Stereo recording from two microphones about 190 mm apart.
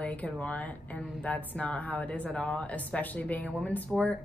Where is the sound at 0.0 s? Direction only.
5° left (ahead or behind).